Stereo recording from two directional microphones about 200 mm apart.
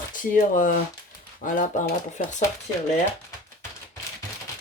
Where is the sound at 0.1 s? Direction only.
40° left (ahead or behind).